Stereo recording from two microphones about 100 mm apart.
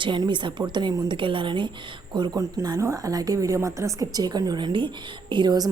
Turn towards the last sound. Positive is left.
turn(degrees=-45)  # may be behind; listen again after turning